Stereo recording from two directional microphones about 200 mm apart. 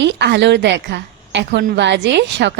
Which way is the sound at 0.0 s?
60° right (ahead or behind).